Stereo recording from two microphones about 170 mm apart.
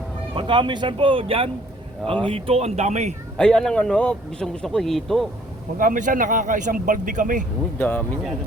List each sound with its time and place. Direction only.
0.3 s speech: 30° right (ahead or behind)
3.3 s speech: 5° left (ahead or behind)
5.7 s speech: 55° right (ahead or behind)
7.8 s speech: 10° left (ahead or behind)